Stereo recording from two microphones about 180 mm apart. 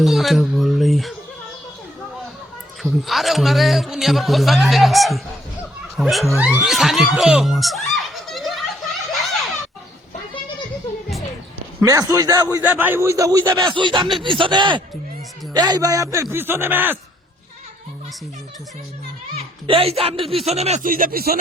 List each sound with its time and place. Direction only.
0.0 s music: centre (ahead or behind)
2.8 s a man's voice: centre (ahead or behind)
11.8 s a man's voice: 20° right (ahead or behind)
12.5 s a man's voice: 10° right (ahead or behind)
19.4 s speech: 30° right (ahead or behind); by 21.3 s 55° right (ahead or behind)